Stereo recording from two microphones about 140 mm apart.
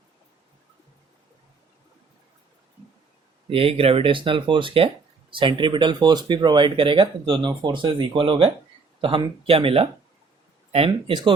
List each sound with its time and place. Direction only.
3.5 s speech: 40° right (ahead or behind)